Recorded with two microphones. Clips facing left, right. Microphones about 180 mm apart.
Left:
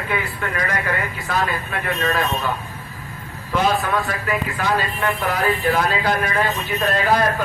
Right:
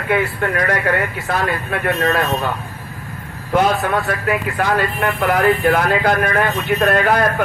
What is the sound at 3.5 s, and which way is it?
A man's voice, 50° right (ahead or behind).